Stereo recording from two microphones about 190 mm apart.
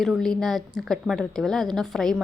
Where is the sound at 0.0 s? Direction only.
Centre (ahead or behind).